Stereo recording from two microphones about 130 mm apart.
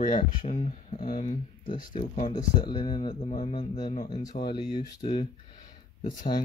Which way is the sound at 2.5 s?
35° left (ahead or behind).